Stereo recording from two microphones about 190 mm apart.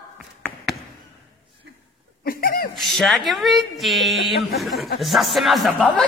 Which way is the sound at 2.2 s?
50° left (ahead or behind).